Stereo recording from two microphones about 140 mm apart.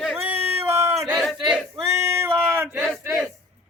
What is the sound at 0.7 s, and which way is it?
Speech, 20° right (ahead or behind).